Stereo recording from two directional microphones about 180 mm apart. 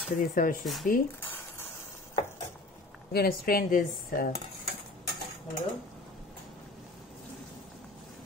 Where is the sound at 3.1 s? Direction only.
55° left (ahead or behind).